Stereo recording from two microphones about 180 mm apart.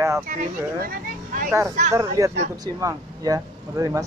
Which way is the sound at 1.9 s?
20° right (ahead or behind).